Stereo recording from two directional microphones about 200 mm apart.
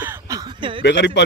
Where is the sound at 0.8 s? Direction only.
60° left (ahead or behind).